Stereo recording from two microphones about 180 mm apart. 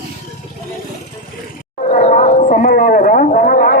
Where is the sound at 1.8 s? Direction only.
40° left (ahead or behind).